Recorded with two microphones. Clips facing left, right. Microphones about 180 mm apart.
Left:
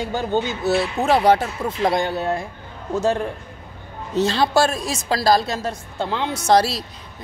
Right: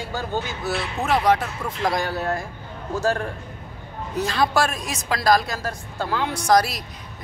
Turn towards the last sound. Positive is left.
turn(degrees=30)  # may be behind; listen again after turning